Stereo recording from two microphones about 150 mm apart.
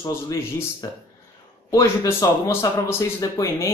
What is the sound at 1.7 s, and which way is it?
Speech, 20° left (ahead or behind).